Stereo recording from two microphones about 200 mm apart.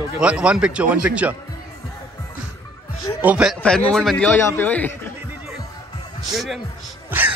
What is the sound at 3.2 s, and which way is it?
Speech, 5° right (ahead or behind).